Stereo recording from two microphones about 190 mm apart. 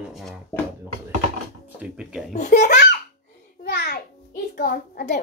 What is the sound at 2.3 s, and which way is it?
Speech, 40° left (ahead or behind).